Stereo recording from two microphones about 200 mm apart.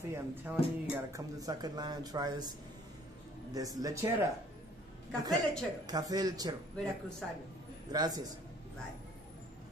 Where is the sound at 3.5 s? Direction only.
15° right (ahead or behind).